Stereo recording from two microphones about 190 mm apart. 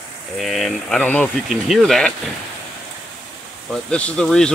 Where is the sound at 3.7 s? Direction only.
5° left (ahead or behind).